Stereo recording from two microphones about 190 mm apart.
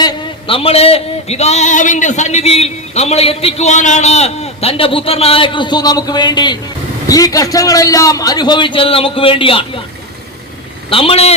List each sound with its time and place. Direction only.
0.0 s a man's voice: 30° left (ahead or behind)
10.8 s a man's voice: 30° left (ahead or behind)